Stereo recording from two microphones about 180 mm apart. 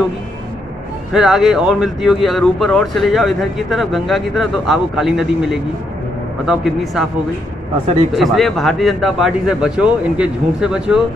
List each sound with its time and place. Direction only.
1.1 s speech: centre (ahead or behind)
7.8 s speech: 35° right (ahead or behind)
8.1 s speech: centre (ahead or behind)